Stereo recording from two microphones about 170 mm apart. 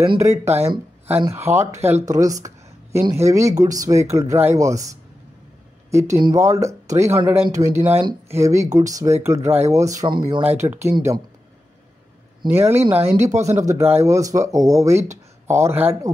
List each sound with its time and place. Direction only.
0.7 s speech: 10° right (ahead or behind); by 10.5 s 25° right (ahead or behind)
10.5 s speech: 15° right (ahead or behind)
12.4 s speech: 15° right (ahead or behind)